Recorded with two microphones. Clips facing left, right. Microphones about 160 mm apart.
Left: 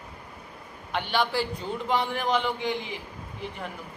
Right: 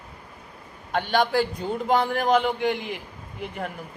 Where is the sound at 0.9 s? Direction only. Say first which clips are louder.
Right 4 dB; 45° right (ahead or behind).